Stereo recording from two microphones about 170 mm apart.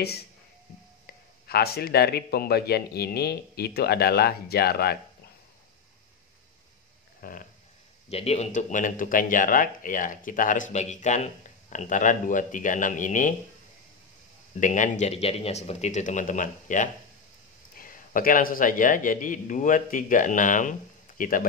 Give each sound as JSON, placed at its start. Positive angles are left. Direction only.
{"t": 1.0, "sound": "speech", "side_deg": 65}
{"t": 7.2, "sound": "a sound", "side_deg": 55}
{"t": 8.1, "sound": "speech", "side_deg": 35}
{"t": 14.6, "sound": "speech", "side_deg": 45}